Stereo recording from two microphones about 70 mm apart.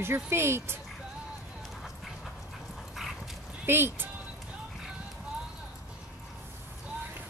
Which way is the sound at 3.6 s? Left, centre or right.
Right.